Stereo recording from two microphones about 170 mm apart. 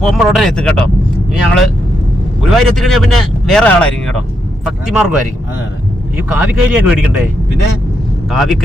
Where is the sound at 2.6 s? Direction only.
Centre (ahead or behind).